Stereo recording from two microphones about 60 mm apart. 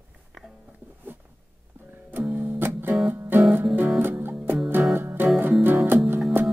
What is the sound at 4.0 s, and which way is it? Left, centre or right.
Music, right.